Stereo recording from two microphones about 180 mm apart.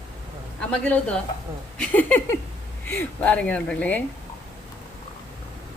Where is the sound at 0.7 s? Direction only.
5° left (ahead or behind).